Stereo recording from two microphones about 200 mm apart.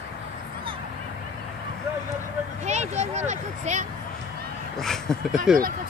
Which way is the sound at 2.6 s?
35° right (ahead or behind).